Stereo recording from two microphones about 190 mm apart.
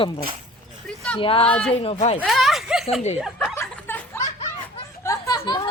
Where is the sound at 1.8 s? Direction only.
35° left (ahead or behind).